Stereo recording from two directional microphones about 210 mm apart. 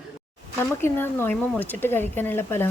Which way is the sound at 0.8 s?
10° left (ahead or behind).